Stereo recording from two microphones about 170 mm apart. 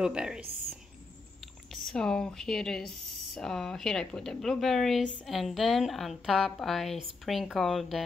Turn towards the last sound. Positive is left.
turn(degrees=0)  # may be behind; listen again after turning